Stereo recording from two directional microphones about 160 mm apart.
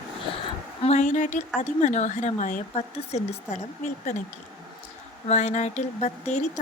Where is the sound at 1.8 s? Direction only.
50° left (ahead or behind).